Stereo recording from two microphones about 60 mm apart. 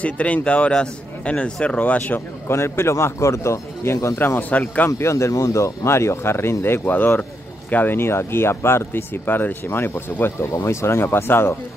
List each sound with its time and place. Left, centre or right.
0.0 s speech: left
2.4 s speech: left
4.4 s speech: left
4.8 s speech: left
10.5 s speech: left